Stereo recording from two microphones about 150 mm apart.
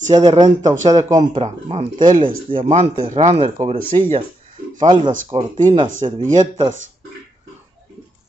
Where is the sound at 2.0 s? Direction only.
60° right (ahead or behind).